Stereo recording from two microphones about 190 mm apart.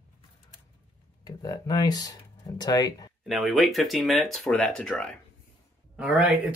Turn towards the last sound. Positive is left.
turn(degrees=-5)  # may be behind; listen again after turning